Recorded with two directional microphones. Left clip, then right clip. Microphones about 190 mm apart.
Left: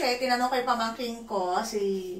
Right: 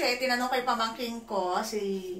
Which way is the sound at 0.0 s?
20° right (ahead or behind).